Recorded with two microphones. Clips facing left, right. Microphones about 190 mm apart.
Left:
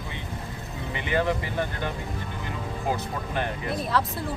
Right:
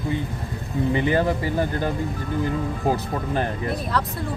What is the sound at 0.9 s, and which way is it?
Speech, 35° right (ahead or behind).